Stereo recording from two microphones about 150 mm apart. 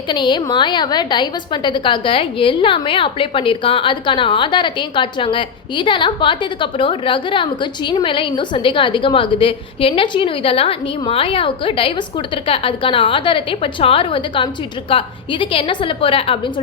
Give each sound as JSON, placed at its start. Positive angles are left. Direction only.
{"t": 0.1, "sound": "a woman's voice", "side_deg": 30}